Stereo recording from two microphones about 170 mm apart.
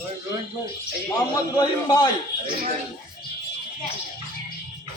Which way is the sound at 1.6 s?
25° left (ahead or behind).